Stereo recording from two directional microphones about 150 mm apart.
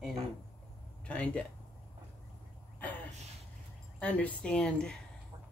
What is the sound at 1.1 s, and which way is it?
Speech, 5° left (ahead or behind).